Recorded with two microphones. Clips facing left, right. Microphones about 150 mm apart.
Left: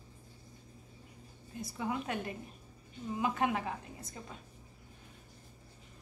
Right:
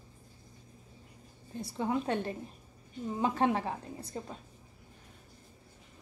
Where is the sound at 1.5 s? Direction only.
30° right (ahead or behind).